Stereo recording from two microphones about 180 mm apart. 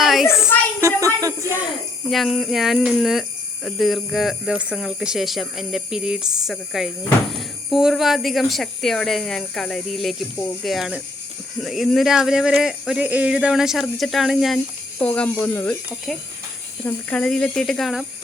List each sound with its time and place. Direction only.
0.0 s a sound: centre (ahead or behind)
0.8 s speech: 15° right (ahead or behind)
2.0 s speech: centre (ahead or behind)